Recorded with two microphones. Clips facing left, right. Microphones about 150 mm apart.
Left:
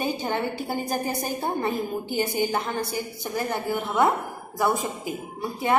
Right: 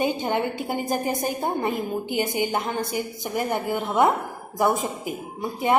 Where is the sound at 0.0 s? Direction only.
15° right (ahead or behind).